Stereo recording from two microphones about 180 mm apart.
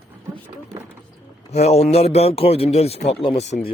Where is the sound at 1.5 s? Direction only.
35° left (ahead or behind).